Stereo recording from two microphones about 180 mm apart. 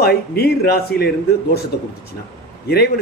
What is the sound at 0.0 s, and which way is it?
A man's voice, 60° left (ahead or behind).